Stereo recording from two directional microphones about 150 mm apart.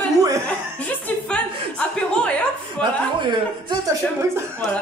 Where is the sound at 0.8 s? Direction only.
10° left (ahead or behind).